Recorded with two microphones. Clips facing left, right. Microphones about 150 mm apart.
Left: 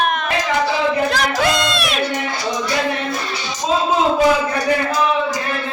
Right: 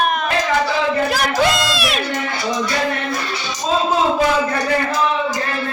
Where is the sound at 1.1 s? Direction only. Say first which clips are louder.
Right 1 dB; 5° right (ahead or behind).